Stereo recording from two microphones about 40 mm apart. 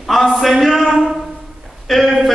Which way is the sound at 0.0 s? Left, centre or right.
Centre.